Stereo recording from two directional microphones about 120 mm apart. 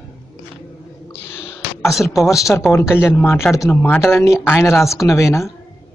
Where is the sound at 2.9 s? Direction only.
20° left (ahead or behind).